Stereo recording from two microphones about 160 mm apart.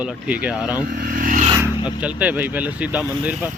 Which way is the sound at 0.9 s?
60° right (ahead or behind).